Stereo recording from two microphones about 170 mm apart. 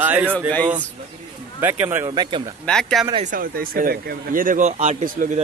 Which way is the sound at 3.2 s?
55° right (ahead or behind).